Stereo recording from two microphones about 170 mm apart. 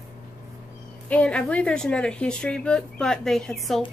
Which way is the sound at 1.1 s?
5° left (ahead or behind).